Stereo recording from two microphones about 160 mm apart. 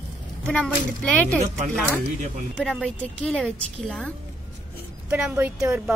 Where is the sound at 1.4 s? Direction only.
50° right (ahead or behind).